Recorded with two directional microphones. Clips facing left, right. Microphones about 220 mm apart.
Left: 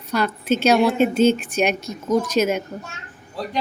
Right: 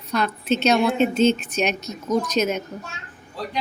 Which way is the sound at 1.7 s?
50° left (ahead or behind).